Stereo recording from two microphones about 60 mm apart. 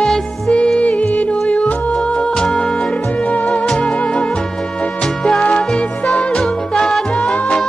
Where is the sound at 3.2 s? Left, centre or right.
Left.